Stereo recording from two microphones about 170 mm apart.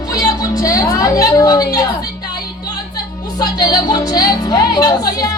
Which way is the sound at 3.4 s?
20° left (ahead or behind).